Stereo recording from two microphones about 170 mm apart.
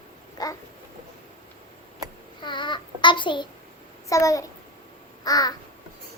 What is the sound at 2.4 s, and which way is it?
Child singing, 25° left (ahead or behind).